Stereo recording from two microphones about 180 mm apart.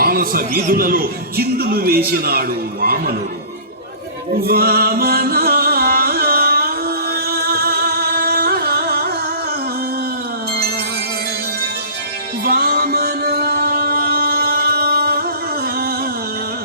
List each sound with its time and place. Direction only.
0.0 s a man's voice: 55° right (ahead or behind)
4.4 s music: 60° right (ahead or behind)
12.5 s music: 60° right (ahead or behind)